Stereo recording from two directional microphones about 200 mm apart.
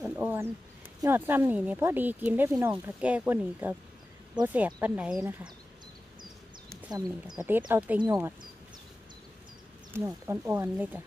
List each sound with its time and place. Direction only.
0.0 s a sound: 10° right (ahead or behind)
1.0 s speech: 10° right (ahead or behind)
6.9 s speech: 20° right (ahead or behind)
7.3 s speech: 10° right (ahead or behind)
9.9 s speech: 15° right (ahead or behind)